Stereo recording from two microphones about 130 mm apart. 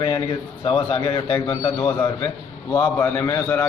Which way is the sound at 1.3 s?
20° left (ahead or behind).